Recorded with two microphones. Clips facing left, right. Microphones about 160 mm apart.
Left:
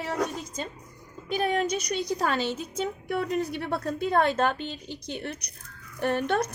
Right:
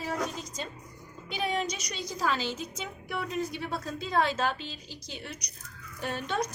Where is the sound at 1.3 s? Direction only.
50° left (ahead or behind).